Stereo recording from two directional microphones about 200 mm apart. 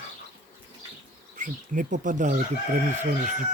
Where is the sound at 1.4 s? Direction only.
40° right (ahead or behind).